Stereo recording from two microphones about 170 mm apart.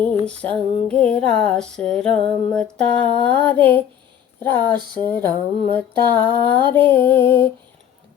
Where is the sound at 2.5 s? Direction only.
5° left (ahead or behind).